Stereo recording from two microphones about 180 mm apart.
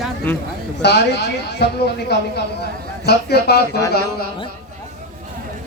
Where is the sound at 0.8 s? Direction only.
70° left (ahead or behind).